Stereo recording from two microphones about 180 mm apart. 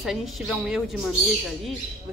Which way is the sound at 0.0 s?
Centre (ahead or behind).